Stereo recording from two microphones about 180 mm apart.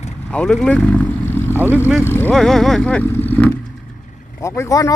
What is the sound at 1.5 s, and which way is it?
Speech, 10° right (ahead or behind).